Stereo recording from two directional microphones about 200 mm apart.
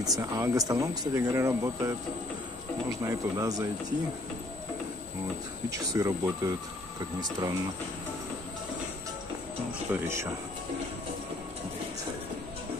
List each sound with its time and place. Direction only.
0.2 s speech: 15° right (ahead or behind)
3.1 s speech: 15° right (ahead or behind)
5.7 s speech: 15° right (ahead or behind)
9.9 s speech: 15° right (ahead or behind)